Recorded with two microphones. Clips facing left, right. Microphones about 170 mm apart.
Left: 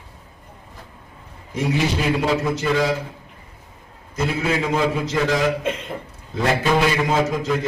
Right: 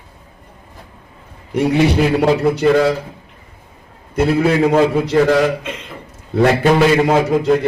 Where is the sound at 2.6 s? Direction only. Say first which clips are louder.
Right 8 dB; 60° right (ahead or behind).